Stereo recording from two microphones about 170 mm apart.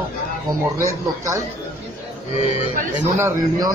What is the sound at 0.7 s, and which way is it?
Speech, 20° right (ahead or behind).